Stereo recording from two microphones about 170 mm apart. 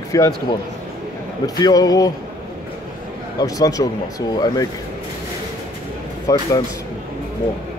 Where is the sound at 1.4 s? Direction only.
20° left (ahead or behind).